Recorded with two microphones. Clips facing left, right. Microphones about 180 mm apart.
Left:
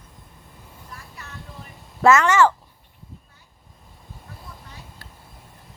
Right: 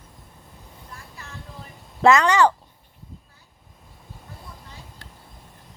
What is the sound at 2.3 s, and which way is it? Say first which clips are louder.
Speech: left 1 dB; 20° right (ahead or behind).